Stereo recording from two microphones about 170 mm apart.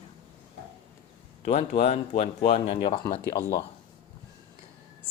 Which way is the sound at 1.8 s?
45° left (ahead or behind).